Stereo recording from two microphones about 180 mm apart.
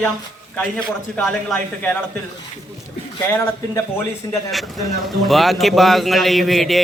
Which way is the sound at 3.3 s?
10° left (ahead or behind).